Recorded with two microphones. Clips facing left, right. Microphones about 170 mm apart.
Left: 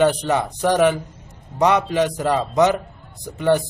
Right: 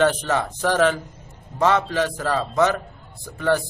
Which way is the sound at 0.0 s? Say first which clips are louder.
Left 2 dB; 15° left (ahead or behind).